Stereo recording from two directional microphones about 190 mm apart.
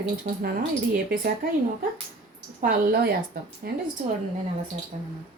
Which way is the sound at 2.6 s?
50° right (ahead or behind).